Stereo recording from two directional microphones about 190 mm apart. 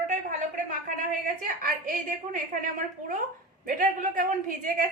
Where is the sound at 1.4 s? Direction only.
45° right (ahead or behind).